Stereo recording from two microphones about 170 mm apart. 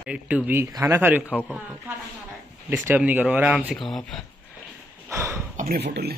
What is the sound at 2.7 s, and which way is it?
A man's voice, 10° right (ahead or behind).